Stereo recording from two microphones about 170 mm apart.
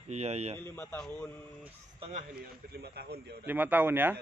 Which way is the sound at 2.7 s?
70° right (ahead or behind).